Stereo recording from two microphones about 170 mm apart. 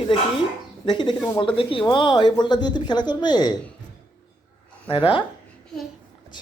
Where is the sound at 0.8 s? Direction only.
25° left (ahead or behind).